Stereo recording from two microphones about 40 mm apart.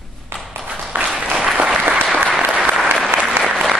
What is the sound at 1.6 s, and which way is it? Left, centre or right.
Applause, right.